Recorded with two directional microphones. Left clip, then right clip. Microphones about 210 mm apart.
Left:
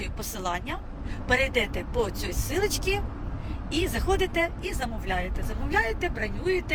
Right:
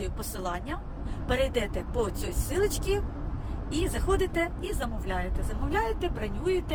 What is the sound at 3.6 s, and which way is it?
A woman's voice, 15° right (ahead or behind).